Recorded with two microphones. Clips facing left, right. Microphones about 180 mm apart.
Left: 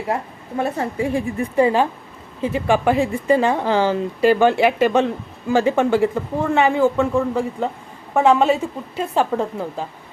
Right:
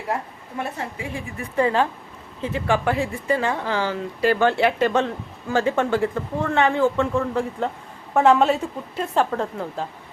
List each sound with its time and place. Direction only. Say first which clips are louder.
0.5 s a woman's voice: left 7 dB; 35° left (ahead or behind)
1.5 s a woman's voice: left 3 dB; 15° left (ahead or behind)